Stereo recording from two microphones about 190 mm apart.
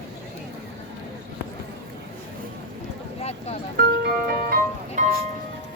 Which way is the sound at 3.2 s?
35° left (ahead or behind).